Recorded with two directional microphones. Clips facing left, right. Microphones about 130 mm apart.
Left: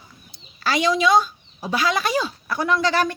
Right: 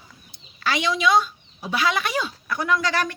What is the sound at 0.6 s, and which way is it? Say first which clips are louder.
A woman's voice: left 4 dB; 40° left (ahead or behind).